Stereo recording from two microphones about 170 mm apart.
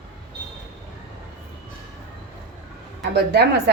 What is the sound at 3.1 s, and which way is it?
Speech, 75° right (ahead or behind).